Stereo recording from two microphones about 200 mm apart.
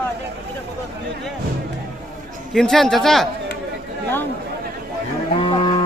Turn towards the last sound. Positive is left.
turn(degrees=25)  # may be behind; listen again after turning